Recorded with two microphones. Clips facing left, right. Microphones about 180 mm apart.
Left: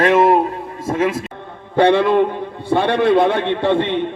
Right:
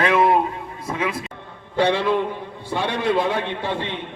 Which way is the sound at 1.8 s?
55° left (ahead or behind).